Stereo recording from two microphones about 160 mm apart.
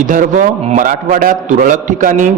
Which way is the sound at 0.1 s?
55° right (ahead or behind).